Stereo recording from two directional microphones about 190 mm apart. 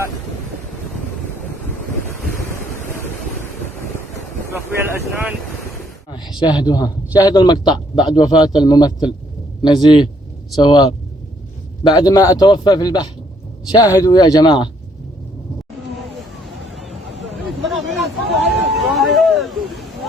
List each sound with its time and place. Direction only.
4.5 s speech: 10° right (ahead or behind)
6.4 s speech: 20° left (ahead or behind)
15.9 s a sound: centre (ahead or behind)
17.3 s hubbub: centre (ahead or behind)